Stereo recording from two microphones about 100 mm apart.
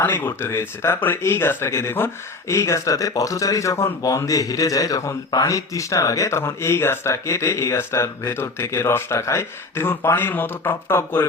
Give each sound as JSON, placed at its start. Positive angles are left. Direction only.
{"t": 0.0, "sound": "speech", "side_deg": 20}